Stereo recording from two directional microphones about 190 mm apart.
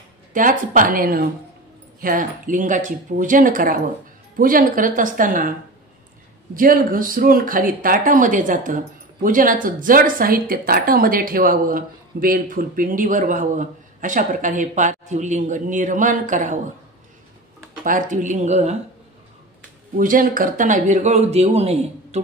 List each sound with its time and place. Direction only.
0.3 s speech: 45° right (ahead or behind)
6.5 s speech: 45° right (ahead or behind)
17.8 s a man's voice: 45° right (ahead or behind)
20.0 s a man's voice: 45° right (ahead or behind)